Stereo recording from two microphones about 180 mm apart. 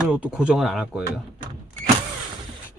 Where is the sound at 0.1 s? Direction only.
5° right (ahead or behind).